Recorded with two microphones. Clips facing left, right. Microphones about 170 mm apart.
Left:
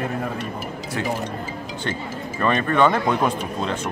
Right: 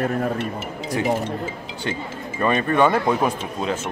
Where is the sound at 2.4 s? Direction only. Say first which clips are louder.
Even; 10° right (ahead or behind).